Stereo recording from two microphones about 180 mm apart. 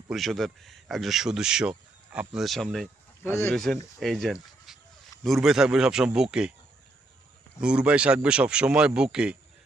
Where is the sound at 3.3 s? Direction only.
15° left (ahead or behind).